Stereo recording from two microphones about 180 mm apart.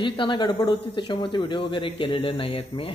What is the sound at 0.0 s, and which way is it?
Speech, 25° left (ahead or behind).